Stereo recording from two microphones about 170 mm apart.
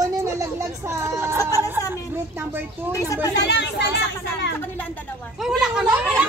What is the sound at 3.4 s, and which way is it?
Speech, 90° left.